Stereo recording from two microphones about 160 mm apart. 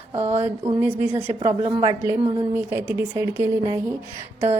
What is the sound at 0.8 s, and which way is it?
A woman's voice, 10° right (ahead or behind).